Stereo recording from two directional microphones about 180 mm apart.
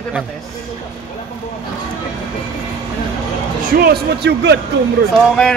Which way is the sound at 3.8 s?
65° right (ahead or behind).